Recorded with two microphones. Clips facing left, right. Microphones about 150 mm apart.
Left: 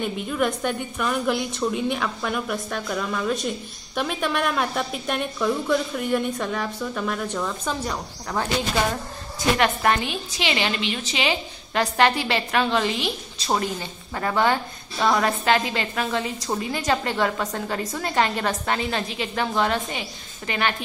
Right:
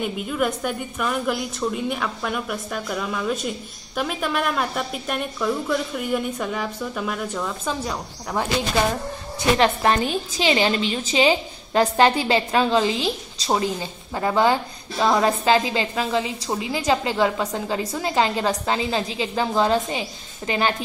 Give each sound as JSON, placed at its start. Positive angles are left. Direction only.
{"t": 0.0, "sound": "a woman's voice", "side_deg": -5}
{"t": 9.6, "sound": "a woman's voice", "side_deg": -30}